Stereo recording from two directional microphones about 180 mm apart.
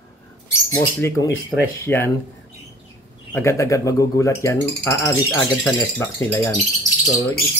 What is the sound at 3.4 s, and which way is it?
Speech, 15° left (ahead or behind).